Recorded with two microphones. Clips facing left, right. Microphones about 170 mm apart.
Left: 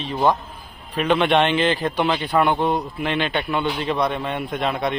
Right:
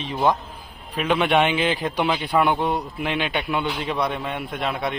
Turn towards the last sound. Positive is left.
turn(degrees=-5)  # may be behind; listen again after turning